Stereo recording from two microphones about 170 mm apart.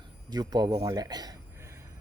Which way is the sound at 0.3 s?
25° right (ahead or behind).